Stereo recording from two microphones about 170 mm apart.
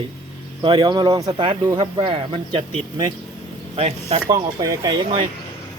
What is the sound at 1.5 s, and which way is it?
Speech, 35° right (ahead or behind).